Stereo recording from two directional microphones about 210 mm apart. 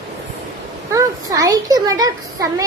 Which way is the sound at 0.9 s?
15° right (ahead or behind).